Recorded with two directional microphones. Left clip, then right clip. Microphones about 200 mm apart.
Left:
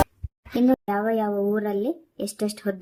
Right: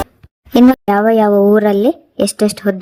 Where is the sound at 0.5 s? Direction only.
45° right (ahead or behind).